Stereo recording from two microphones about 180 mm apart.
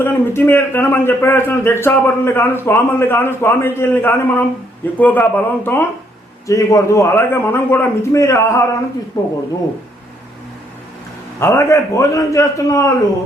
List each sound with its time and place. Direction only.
0.0 s a man's voice: 10° left (ahead or behind)
11.3 s a man's voice: 15° left (ahead or behind)